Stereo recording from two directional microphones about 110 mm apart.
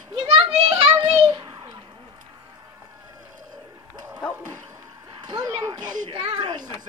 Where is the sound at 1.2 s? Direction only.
40° right (ahead or behind).